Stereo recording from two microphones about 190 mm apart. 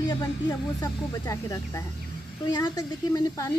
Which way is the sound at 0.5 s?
15° left (ahead or behind).